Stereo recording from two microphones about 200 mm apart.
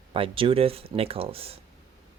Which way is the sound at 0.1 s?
25° right (ahead or behind).